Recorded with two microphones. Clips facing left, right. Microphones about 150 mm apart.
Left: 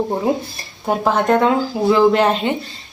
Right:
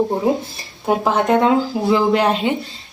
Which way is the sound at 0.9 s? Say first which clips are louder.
Even; 10° right (ahead or behind).